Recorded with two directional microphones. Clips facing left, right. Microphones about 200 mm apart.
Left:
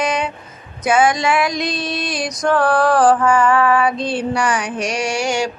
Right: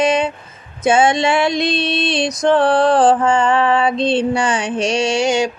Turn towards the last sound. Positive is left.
turn(degrees=-20)  # may be behind; listen again after turning